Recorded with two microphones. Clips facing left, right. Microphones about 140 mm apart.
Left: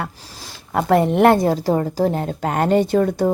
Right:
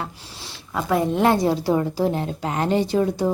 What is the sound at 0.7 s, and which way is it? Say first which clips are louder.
Speech: left 5 dB; 65° left (ahead or behind).